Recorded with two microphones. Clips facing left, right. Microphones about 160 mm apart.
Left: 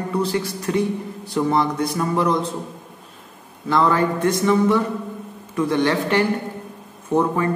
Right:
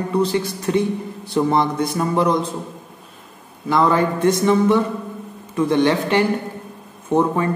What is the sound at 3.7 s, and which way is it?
Speech, 20° right (ahead or behind).